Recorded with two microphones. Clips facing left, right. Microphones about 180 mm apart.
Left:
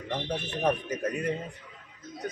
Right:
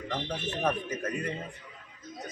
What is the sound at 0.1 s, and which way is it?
Speech, 10° left (ahead or behind).